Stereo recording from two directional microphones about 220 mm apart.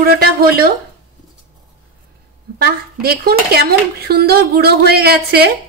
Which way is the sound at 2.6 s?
45° right (ahead or behind).